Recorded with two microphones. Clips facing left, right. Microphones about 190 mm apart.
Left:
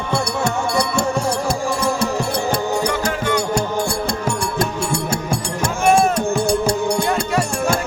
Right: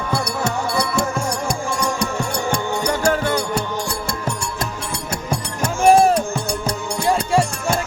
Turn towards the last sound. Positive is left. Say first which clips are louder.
# right 2 dB
turn(degrees=-35)  # may be behind; listen again after turning